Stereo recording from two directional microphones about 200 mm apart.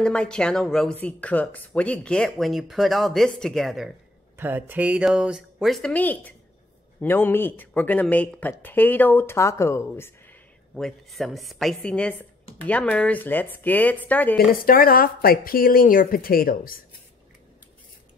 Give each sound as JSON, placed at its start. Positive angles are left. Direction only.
{"t": 0.0, "sound": "speech", "side_deg": 5}
{"t": 4.4, "sound": "speech", "side_deg": -10}
{"t": 10.7, "sound": "speech", "side_deg": 0}
{"t": 14.3, "sound": "a woman's voice", "side_deg": 45}